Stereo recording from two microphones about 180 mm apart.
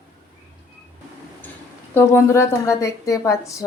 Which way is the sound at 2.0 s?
15° left (ahead or behind).